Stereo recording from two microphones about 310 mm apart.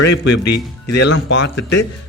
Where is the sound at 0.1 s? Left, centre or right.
Left.